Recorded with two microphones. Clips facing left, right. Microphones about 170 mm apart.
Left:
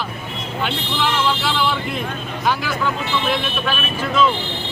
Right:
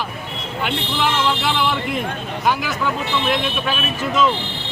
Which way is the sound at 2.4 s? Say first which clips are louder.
Even; 10° right (ahead or behind).